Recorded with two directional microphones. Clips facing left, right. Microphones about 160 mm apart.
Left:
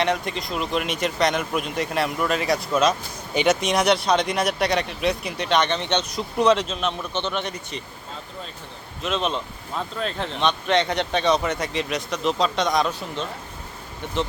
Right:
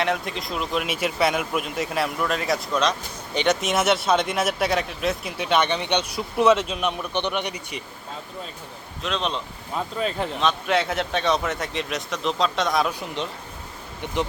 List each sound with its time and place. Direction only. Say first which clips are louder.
0.0 s speech: left 2 dB; centre (ahead or behind)
9.0 s speech: left 2 dB; centre (ahead or behind)
13.2 s speech: right 1 dB; 20° right (ahead or behind)